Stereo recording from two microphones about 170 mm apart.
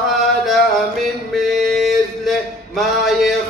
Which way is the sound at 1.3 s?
Centre (ahead or behind).